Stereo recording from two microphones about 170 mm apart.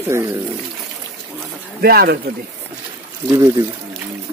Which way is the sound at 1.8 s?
65° right (ahead or behind).